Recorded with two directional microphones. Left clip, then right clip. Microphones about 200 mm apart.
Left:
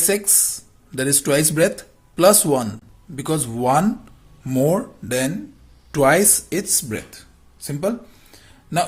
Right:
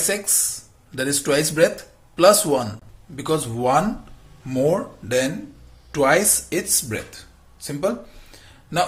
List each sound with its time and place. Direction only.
0.0 s speech: 45° left (ahead or behind)